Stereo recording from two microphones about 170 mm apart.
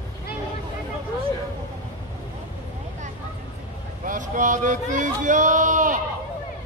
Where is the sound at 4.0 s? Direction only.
50° right (ahead or behind).